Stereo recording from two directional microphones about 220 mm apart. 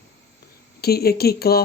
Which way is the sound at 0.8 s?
45° left (ahead or behind).